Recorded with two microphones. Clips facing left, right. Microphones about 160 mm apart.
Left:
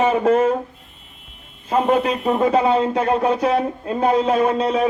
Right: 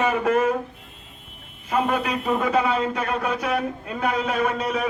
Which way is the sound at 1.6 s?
30° left (ahead or behind).